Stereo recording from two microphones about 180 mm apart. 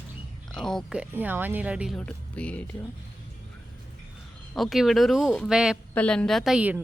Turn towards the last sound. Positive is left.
turn(degrees=-5)  # may be behind; listen again after turning